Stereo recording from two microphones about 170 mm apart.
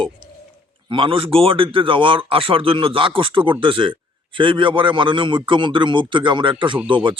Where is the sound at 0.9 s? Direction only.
30° right (ahead or behind).